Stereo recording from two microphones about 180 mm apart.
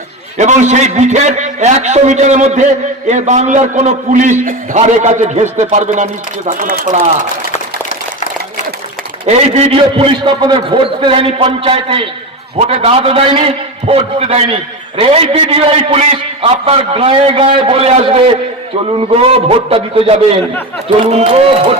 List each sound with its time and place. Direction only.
0.3 s a man's voice: 40° right (ahead or behind)
7.5 s a sound: 45° left (ahead or behind)
9.2 s a man's voice: 35° right (ahead or behind)